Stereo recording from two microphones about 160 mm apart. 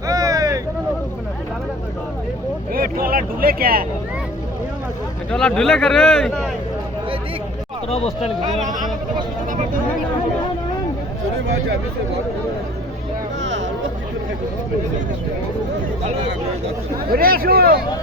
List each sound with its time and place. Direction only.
0.1 s vehicle: 20° right (ahead or behind)
2.7 s speech: 65° right (ahead or behind)
5.3 s speech: 5° left (ahead or behind)
7.9 s speech: 40° left (ahead or behind)
17.1 s speech: 65° right (ahead or behind)